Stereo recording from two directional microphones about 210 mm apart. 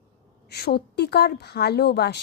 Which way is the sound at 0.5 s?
50° left (ahead or behind).